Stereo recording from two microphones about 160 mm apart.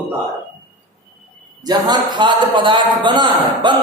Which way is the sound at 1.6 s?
25° right (ahead or behind).